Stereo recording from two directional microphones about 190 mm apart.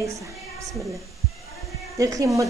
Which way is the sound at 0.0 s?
15° right (ahead or behind).